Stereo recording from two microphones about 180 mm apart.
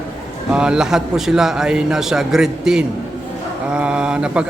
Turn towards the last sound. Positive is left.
turn(degrees=-5)  # may be behind; listen again after turning